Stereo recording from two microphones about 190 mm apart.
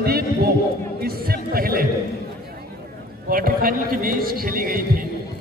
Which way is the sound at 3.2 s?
50° right (ahead or behind).